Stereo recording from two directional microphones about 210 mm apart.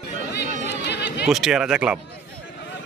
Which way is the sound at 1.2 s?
Centre (ahead or behind).